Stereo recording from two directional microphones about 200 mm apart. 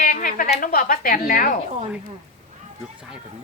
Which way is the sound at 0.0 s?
40° left (ahead or behind).